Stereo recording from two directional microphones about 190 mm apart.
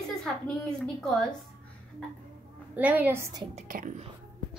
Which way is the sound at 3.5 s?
45° right (ahead or behind).